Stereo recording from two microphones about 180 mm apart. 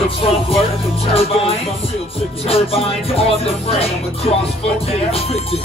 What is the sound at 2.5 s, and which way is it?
Music, 35° left (ahead or behind).